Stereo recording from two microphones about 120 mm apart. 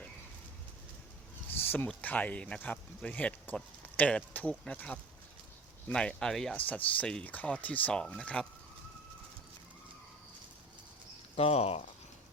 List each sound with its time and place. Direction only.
1.5 s a sound: 15° left (ahead or behind)
1.9 s speech: 15° left (ahead or behind)
11.3 s speech: 55° left (ahead or behind)